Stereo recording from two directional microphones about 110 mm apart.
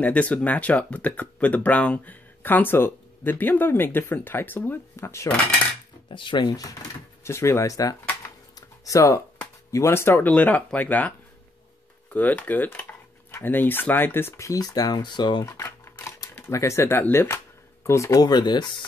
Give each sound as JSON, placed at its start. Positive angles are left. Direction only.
{"t": 0.0, "sound": "speech", "side_deg": 10}
{"t": 6.0, "sound": "speech", "side_deg": 45}
{"t": 7.2, "sound": "speech", "side_deg": 25}
{"t": 8.5, "sound": "a sound", "side_deg": 30}
{"t": 9.7, "sound": "speech", "side_deg": 25}
{"t": 15.4, "sound": "a sound", "side_deg": 25}
{"t": 16.3, "sound": "speech", "side_deg": 25}